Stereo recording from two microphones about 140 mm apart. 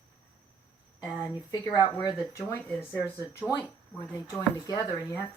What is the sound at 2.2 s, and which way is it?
Speech, 15° left (ahead or behind).